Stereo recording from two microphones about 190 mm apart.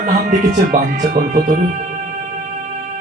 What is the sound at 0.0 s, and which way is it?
Speech, 45° right (ahead or behind).